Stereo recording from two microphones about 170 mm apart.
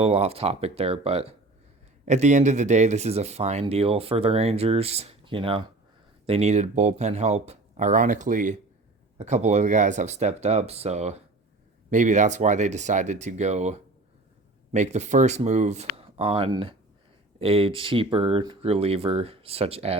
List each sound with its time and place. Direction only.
0.0 s speech: 35° right (ahead or behind)